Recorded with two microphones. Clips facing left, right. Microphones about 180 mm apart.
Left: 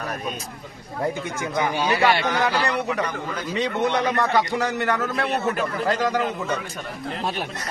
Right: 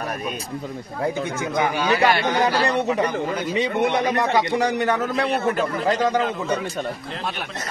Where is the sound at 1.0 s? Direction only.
20° right (ahead or behind).